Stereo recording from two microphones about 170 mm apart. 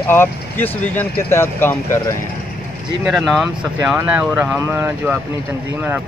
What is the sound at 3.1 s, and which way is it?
Speech, centre (ahead or behind).